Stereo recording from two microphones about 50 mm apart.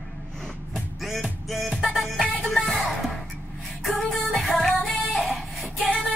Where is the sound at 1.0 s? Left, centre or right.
Centre.